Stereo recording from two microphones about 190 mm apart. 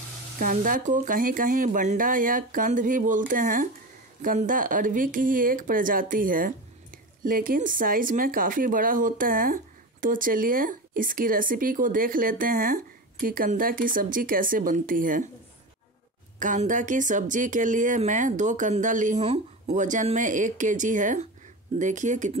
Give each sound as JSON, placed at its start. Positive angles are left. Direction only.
{"t": 0.4, "sound": "speech", "side_deg": -45}
{"t": 16.3, "sound": "speech", "side_deg": -45}